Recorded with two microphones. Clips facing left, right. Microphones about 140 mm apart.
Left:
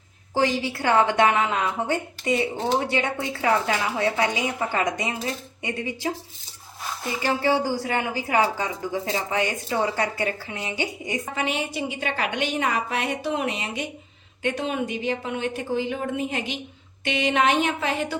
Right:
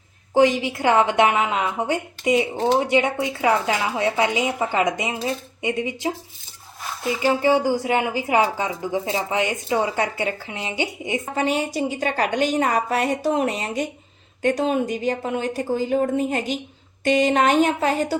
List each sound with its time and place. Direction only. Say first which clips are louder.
0.3 s a woman's voice: right 6 dB; 20° right (ahead or behind)
11.3 s a woman's voice: right 6 dB; 40° right (ahead or behind)